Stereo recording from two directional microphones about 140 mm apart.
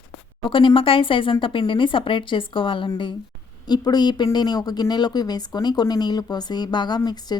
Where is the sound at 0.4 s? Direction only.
35° left (ahead or behind).